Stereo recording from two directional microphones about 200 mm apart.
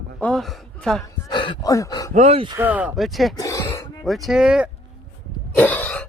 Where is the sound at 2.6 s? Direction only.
10° right (ahead or behind).